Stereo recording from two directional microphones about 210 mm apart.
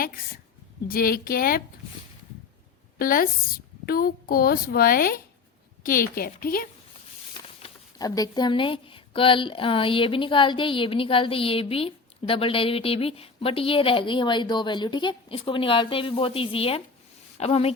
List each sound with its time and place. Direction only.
0.9 s a woman's voice: 45° left (ahead or behind)
3.0 s a woman's voice: 45° left (ahead or behind)
7.6 s speech: 20° left (ahead or behind)